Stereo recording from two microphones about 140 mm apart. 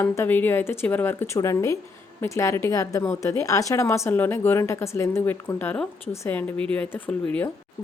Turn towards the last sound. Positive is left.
turn(degrees=10)  # may be behind; listen again after turning